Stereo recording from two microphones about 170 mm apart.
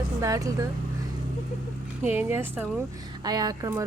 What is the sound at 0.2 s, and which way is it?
Speech, 20° right (ahead or behind).